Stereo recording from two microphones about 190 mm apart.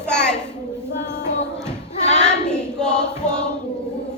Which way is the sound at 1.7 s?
35° left (ahead or behind).